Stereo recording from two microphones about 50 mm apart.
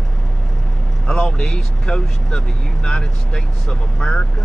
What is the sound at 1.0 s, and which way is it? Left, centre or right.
Speech, centre.